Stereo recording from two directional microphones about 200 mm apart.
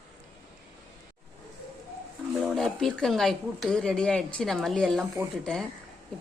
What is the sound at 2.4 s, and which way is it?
A woman's voice, centre (ahead or behind).